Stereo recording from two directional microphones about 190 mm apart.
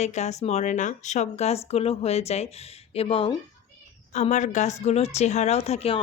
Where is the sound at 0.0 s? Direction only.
35° left (ahead or behind).